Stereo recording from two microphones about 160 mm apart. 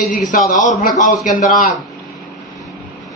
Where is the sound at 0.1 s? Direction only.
55° left (ahead or behind).